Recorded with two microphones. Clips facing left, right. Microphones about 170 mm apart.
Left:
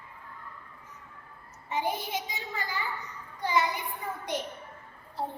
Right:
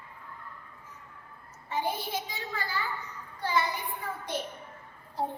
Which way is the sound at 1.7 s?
20° left (ahead or behind).